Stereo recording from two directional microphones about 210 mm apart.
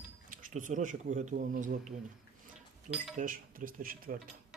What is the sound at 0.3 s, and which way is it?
Speech, 35° right (ahead or behind).